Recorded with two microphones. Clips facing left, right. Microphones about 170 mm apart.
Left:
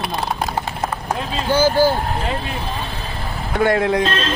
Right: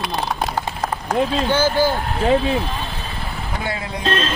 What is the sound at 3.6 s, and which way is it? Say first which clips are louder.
Speech: left 13 dB; 80° left.